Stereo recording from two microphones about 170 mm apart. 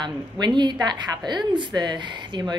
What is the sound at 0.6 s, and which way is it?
A woman's voice, 25° right (ahead or behind).